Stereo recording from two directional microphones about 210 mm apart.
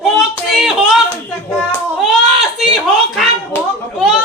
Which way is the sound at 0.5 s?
Centre (ahead or behind).